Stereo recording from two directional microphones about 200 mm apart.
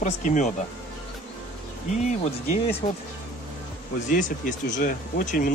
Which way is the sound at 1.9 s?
35° left (ahead or behind).